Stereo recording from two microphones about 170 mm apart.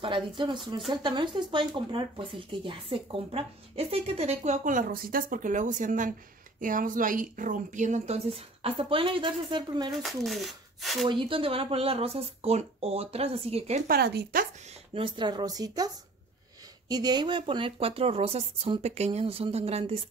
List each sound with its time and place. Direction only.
0.0 s speech: 30° right (ahead or behind)
10.0 s speech: centre (ahead or behind)
11.1 s speech: 30° right (ahead or behind)
13.8 s speech: 70° right (ahead or behind)
15.0 s speech: 25° right (ahead or behind)
16.9 s speech: 25° right (ahead or behind)